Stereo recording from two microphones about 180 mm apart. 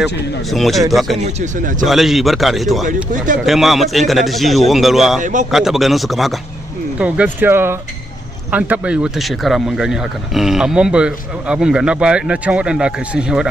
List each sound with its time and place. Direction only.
0.5 s speech: centre (ahead or behind)
1.2 s speech: 45° right (ahead or behind)
1.9 s speech: centre (ahead or behind)
5.2 s speech: 45° right (ahead or behind)
5.5 s speech: centre (ahead or behind)